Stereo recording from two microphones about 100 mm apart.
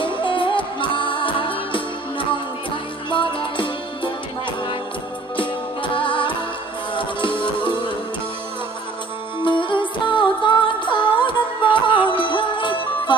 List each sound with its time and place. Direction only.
0.0 s music: 60° left (ahead or behind)
9.4 s music: 55° left (ahead or behind)